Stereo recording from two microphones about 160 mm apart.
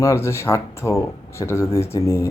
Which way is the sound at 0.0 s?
20° left (ahead or behind).